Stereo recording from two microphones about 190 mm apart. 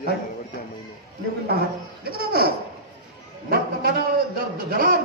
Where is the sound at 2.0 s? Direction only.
55° right (ahead or behind).